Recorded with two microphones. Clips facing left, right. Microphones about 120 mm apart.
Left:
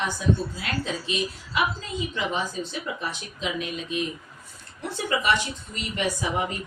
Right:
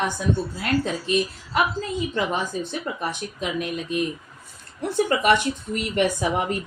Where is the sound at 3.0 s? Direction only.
55° right (ahead or behind).